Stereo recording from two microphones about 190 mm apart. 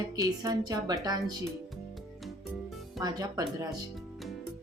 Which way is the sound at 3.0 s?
20° right (ahead or behind).